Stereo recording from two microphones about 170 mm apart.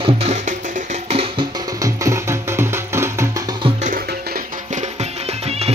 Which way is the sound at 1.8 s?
15° right (ahead or behind).